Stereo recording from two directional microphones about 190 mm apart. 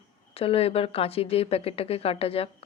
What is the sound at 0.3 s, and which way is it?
Speech, 30° left (ahead or behind).